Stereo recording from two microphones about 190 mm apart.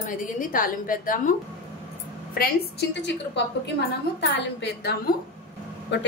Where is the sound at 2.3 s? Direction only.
55° left (ahead or behind).